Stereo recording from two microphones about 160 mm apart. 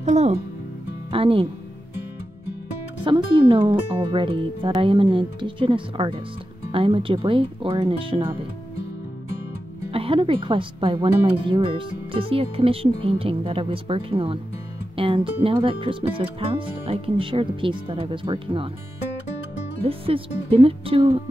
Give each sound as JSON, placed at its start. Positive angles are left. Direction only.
{"t": 0.0, "sound": "speech", "side_deg": -45}
{"t": 3.0, "sound": "speech", "side_deg": -30}
{"t": 9.8, "sound": "speech", "side_deg": -35}
{"t": 19.8, "sound": "speech", "side_deg": -35}